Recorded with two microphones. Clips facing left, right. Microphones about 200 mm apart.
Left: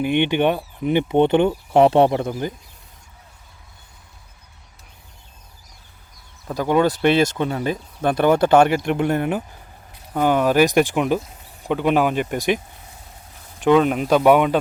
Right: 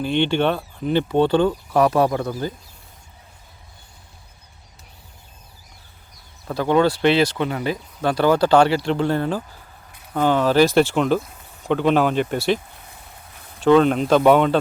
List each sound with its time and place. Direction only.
0.0 s speech: 15° left (ahead or behind)
6.5 s speech: 15° left (ahead or behind)
8.0 s speech: 20° left (ahead or behind)
13.6 s speech: 10° left (ahead or behind)